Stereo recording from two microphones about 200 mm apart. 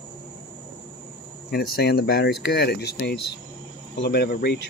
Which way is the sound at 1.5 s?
55° left (ahead or behind).